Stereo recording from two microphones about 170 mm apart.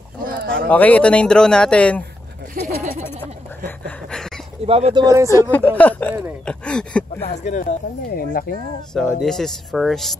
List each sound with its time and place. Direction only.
0.2 s a sound: 70° right (ahead or behind)
0.7 s speech: 10° left (ahead or behind)
2.6 s a sound: 55° right (ahead or behind)
3.6 s a sound: 5° left (ahead or behind)
4.6 s speech: 35° right (ahead or behind)
5.0 s speech: 20° right (ahead or behind)
5.3 s speech: 15° left (ahead or behind)
7.2 s speech: 45° left (ahead or behind)
8.1 s speech: 60° left (ahead or behind)
9.2 s speech: 5° left (ahead or behind)